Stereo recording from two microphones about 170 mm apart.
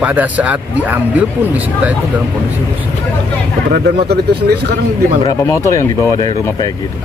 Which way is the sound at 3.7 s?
65° right (ahead or behind).